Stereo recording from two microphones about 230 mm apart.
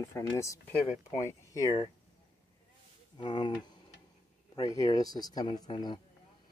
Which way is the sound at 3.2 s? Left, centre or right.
Centre.